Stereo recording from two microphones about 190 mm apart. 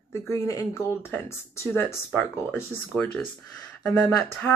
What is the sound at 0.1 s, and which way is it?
Speech, 15° left (ahead or behind).